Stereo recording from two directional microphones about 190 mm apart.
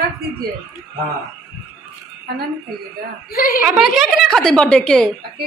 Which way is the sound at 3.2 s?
50° left (ahead or behind).